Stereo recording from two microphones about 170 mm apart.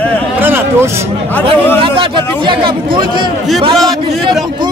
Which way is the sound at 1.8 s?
30° right (ahead or behind).